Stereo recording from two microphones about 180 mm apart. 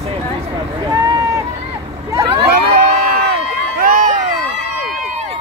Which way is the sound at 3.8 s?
50° right (ahead or behind).